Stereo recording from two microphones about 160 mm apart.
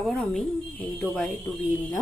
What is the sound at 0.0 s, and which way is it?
Speech, 5° left (ahead or behind).